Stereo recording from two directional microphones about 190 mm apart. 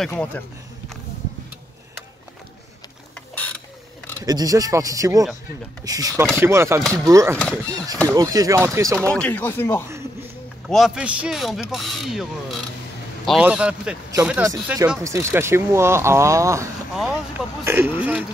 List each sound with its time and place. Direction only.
0.1 s speech: 10° left (ahead or behind)
3.3 s mechanisms: 5° left (ahead or behind)
4.2 s speech: 20° right (ahead or behind)
9.1 s speech: 10° left (ahead or behind)
10.7 s speech: 5° right (ahead or behind)
17.6 s speech: 10° right (ahead or behind)